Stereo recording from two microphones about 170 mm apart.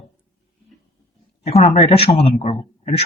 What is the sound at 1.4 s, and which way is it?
A man's voice, 35° left (ahead or behind).